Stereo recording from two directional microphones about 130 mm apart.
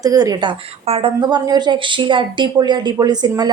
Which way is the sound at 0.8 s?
50° right (ahead or behind).